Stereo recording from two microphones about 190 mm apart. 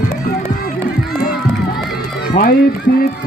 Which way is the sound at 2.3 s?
50° left (ahead or behind).